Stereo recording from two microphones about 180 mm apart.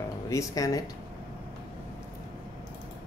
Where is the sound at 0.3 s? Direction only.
20° left (ahead or behind).